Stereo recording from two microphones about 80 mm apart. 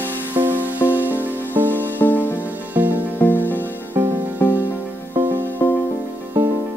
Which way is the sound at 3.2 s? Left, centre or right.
Left.